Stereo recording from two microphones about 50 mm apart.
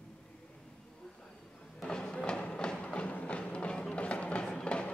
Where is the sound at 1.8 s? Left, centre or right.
Centre.